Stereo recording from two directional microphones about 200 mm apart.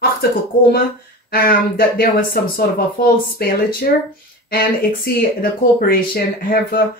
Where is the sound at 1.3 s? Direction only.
50° left (ahead or behind).